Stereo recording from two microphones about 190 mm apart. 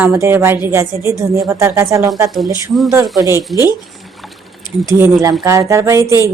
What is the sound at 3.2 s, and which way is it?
Speech, 15° right (ahead or behind).